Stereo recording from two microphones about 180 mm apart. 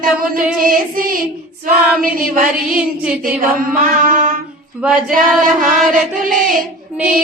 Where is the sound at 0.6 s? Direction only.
50° right (ahead or behind).